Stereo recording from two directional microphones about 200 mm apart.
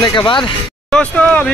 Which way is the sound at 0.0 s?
25° left (ahead or behind).